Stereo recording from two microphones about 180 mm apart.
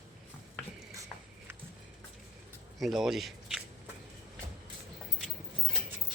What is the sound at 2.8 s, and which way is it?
Speech, centre (ahead or behind).